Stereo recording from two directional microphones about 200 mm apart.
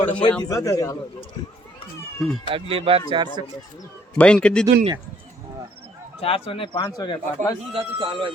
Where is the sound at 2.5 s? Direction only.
25° right (ahead or behind).